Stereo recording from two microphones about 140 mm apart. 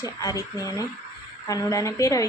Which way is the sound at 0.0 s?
25° left (ahead or behind).